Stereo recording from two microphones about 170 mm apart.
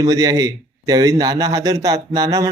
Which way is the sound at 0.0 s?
20° right (ahead or behind).